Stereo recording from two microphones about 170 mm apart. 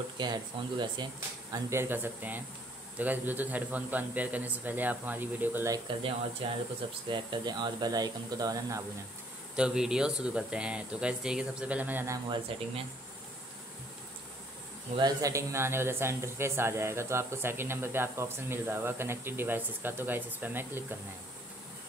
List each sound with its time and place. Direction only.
0.2 s speech: 25° right (ahead or behind)
1.5 s speech: 15° right (ahead or behind)
5.9 s speech: 30° right (ahead or behind)
9.6 s speech: 5° right (ahead or behind)
12.3 s speech: 35° right (ahead or behind)
15.0 s speech: 20° right (ahead or behind)